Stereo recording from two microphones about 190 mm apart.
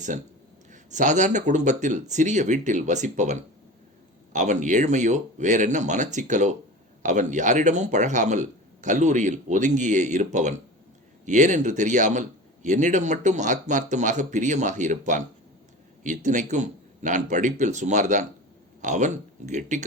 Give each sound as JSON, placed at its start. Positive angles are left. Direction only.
{"t": 0.7, "sound": "speech", "side_deg": -40}